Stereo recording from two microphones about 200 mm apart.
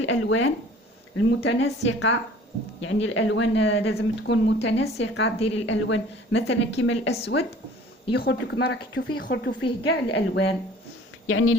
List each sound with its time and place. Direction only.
0.0 s speech: 70° left (ahead or behind)
1.1 s speech: 90° left
1.4 s a woman's voice: 60° left (ahead or behind)
8.1 s a woman's voice: 55° left (ahead or behind)
11.3 s speech: 80° left